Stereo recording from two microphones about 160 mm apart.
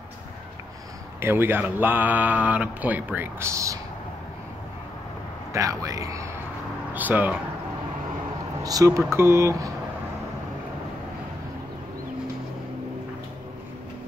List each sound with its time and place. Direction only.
1.2 s speech: 15° right (ahead or behind)
5.5 s speech: 20° right (ahead or behind)
8.6 s speech: 20° right (ahead or behind)